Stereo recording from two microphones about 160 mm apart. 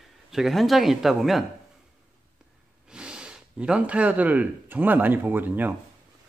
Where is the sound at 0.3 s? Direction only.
Centre (ahead or behind).